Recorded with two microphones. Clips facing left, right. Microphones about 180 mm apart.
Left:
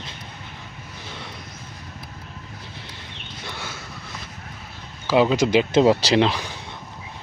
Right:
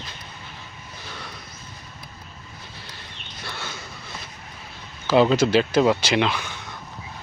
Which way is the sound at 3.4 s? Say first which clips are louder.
Even; 10° left (ahead or behind).